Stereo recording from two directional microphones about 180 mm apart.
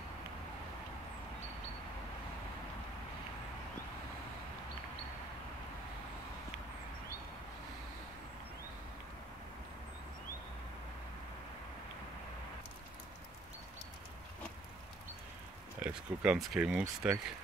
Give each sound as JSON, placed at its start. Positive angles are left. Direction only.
{"t": 15.8, "sound": "speech", "side_deg": -5}